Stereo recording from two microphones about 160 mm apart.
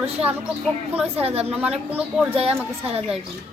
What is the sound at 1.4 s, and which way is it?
Speech, 5° right (ahead or behind).